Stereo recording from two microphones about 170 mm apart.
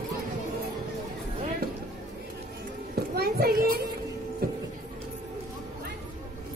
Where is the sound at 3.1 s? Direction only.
65° right (ahead or behind).